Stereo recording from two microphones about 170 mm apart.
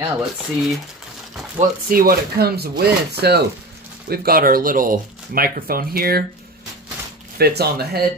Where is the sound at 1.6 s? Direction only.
55° right (ahead or behind).